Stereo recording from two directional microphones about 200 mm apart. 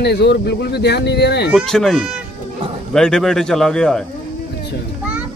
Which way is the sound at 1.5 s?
Centre (ahead or behind).